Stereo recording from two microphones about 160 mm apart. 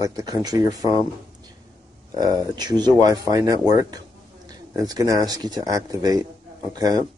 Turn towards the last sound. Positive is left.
turn(degrees=-25)  # may be behind; listen again after turning